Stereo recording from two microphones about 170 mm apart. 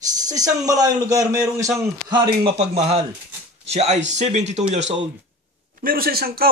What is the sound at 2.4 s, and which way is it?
A man's voice, 40° right (ahead or behind).